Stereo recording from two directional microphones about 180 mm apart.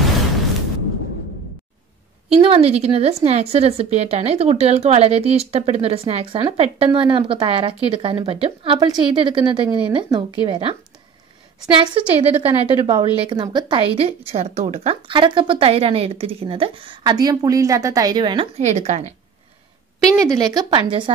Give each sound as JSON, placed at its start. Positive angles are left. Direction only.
{"t": 0.0, "sound": "a sound", "side_deg": 0}
{"t": 2.4, "sound": "a woman's voice", "side_deg": -30}
{"t": 20.2, "sound": "a woman's voice", "side_deg": -20}